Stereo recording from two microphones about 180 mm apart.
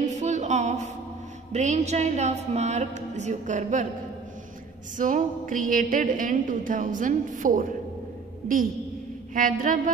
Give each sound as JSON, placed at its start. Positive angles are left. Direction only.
{"t": 0.0, "sound": "a sound", "side_deg": -40}
{"t": 1.5, "sound": "a woman's voice", "side_deg": -40}
{"t": 4.9, "sound": "a woman's voice", "side_deg": -45}
{"t": 9.3, "sound": "a woman's voice", "side_deg": -45}